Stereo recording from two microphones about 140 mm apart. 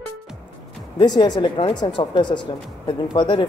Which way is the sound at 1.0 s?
30° left (ahead or behind).